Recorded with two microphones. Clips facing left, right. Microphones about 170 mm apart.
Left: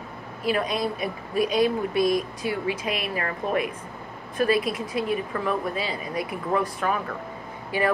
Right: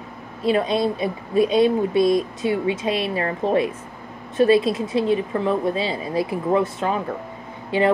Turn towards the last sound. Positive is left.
turn(degrees=-25)  # may be behind; listen again after turning